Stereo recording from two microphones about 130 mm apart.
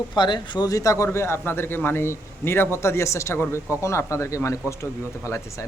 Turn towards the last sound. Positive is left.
turn(degrees=20)  # may be behind; listen again after turning